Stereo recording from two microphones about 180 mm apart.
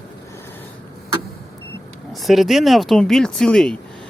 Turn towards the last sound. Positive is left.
turn(degrees=5)  # may be behind; listen again after turning